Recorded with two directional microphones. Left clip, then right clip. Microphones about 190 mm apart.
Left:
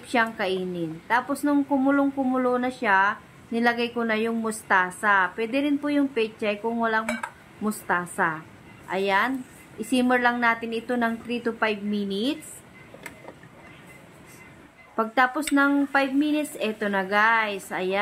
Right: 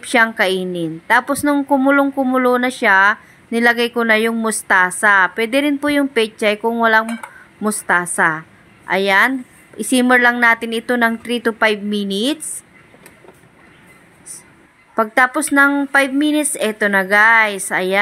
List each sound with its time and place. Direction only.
0.0 s a woman's voice: 35° right (ahead or behind)
15.0 s a woman's voice: 35° right (ahead or behind)